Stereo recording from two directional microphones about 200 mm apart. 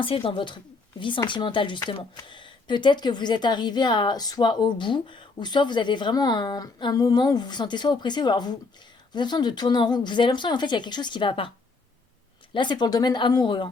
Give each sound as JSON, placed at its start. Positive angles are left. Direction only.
{"t": 0.0, "sound": "speech", "side_deg": 25}
{"t": 12.5, "sound": "speech", "side_deg": 20}